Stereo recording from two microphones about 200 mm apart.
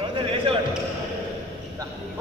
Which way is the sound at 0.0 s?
25° right (ahead or behind).